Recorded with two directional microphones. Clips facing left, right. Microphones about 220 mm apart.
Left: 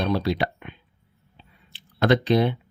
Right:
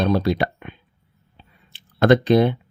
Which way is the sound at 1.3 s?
50° right (ahead or behind).